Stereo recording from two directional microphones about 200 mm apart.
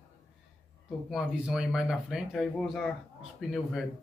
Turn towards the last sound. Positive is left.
turn(degrees=0)  # may be behind; listen again after turning